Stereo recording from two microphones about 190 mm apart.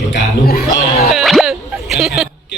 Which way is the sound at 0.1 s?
55° left (ahead or behind).